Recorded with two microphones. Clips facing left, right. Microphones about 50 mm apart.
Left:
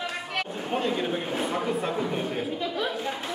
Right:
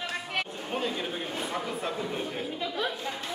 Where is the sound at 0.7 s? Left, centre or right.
Centre.